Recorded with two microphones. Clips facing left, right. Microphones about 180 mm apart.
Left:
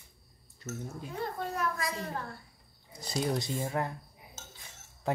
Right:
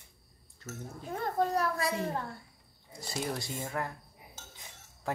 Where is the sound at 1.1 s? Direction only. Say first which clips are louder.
Right 6 dB; 45° right (ahead or behind).